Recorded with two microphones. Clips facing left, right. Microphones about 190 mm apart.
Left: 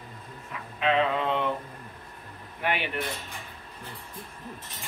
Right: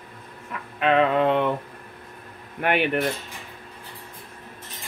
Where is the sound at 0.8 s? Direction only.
60° right (ahead or behind).